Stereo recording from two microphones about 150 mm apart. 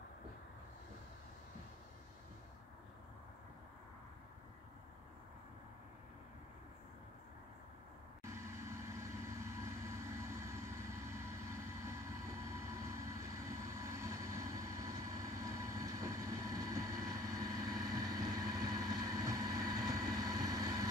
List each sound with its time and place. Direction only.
8.2 s vehicle: 20° right (ahead or behind)